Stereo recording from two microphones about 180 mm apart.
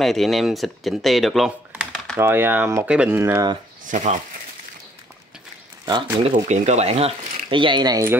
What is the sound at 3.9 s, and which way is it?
Speech, 40° right (ahead or behind).